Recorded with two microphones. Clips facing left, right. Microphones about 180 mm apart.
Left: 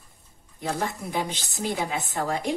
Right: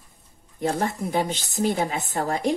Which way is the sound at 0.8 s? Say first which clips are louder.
Right 4 dB; 50° right (ahead or behind).